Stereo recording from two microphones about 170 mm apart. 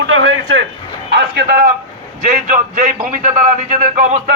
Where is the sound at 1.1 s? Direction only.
65° right (ahead or behind).